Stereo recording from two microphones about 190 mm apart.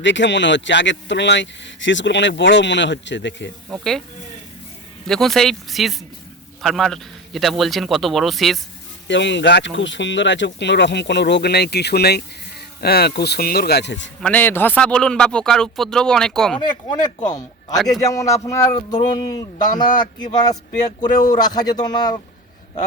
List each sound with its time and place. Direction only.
0.0 s speech: 70° left (ahead or behind)
3.7 s speech: centre (ahead or behind)
5.0 s speech: centre (ahead or behind)
9.0 s speech: 70° left (ahead or behind)
14.2 s speech: 5° left (ahead or behind)
16.6 s speech: 20° left (ahead or behind)